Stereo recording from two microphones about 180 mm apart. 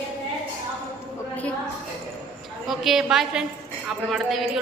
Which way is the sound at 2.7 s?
Centre (ahead or behind).